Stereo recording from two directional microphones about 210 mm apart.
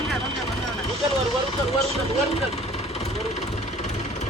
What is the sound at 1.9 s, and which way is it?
Vehicle, 30° left (ahead or behind).